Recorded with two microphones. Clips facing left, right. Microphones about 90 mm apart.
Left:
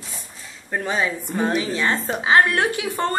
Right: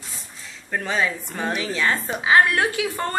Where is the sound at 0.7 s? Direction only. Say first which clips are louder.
Left 1 dB; 20° left (ahead or behind).